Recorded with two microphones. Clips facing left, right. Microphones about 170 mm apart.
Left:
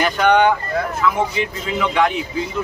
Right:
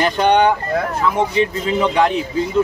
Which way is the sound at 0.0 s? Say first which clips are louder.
Right 1 dB; 30° right (ahead or behind).